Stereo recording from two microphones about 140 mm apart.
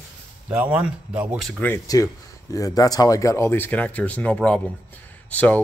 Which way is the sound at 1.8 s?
25° left (ahead or behind).